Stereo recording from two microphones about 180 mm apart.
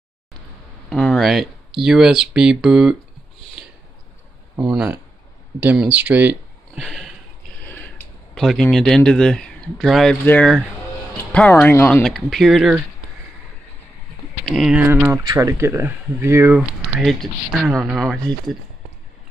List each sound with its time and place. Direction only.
0.8 s speech: 5° left (ahead or behind)
4.6 s speech: 10° right (ahead or behind)
7.6 s speech: 10° left (ahead or behind)
12.0 s speech: centre (ahead or behind)
14.4 s speech: centre (ahead or behind)
17.0 s speech: centre (ahead or behind)